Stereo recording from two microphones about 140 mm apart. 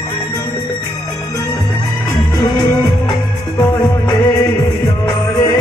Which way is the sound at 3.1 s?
30° left (ahead or behind).